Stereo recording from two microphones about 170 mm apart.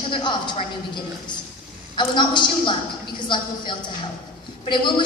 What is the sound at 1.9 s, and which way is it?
A woman's voice, 25° left (ahead or behind).